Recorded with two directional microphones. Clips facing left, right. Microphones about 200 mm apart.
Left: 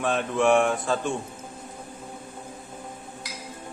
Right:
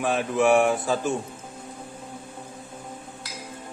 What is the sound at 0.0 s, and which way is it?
A man's voice, 5° right (ahead or behind).